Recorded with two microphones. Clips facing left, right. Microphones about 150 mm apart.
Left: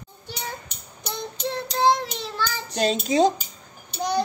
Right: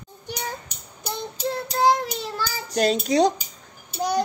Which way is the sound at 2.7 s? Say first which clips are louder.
Right 2 dB; 5° left (ahead or behind).